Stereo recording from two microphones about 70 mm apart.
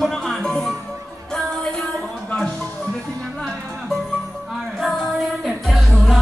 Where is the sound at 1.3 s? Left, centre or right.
Centre.